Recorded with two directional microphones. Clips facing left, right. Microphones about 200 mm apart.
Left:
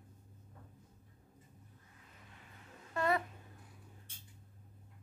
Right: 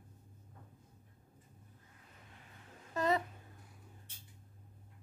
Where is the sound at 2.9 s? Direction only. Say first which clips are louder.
Right 1 dB; 20° right (ahead or behind).